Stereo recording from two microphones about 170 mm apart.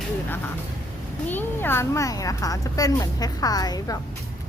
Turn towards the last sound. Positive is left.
turn(degrees=20)  # may be behind; listen again after turning